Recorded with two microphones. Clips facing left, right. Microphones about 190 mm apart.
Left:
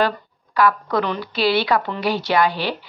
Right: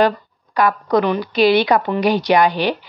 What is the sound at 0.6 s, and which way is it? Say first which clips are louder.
A woman's voice: right 3 dB; 20° right (ahead or behind).